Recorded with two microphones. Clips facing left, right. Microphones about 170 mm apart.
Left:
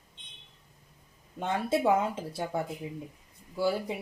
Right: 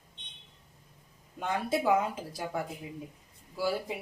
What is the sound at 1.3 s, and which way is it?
Speech, 25° left (ahead or behind).